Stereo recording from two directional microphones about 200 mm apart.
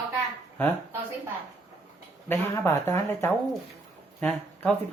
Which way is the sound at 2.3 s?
15° left (ahead or behind).